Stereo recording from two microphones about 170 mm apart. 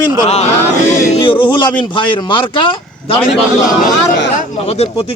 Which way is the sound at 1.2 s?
30° left (ahead or behind).